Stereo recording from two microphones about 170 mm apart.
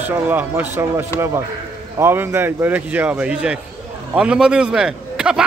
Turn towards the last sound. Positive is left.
turn(degrees=-5)  # may be behind; listen again after turning